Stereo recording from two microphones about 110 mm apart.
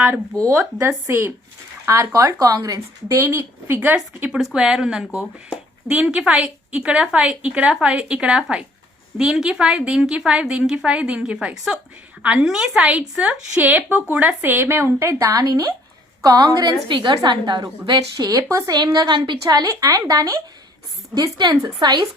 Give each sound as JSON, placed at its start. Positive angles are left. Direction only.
{"t": 0.4, "sound": "a woman's voice", "side_deg": -25}
{"t": 18.8, "sound": "a woman's voice", "side_deg": -40}
{"t": 19.4, "sound": "a woman's voice", "side_deg": -35}